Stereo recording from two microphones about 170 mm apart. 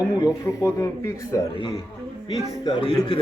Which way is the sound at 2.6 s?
30° left (ahead or behind).